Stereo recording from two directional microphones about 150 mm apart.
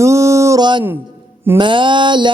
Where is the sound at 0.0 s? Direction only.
20° right (ahead or behind).